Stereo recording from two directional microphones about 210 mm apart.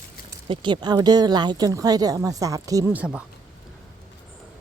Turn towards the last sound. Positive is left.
turn(degrees=-5)  # may be behind; listen again after turning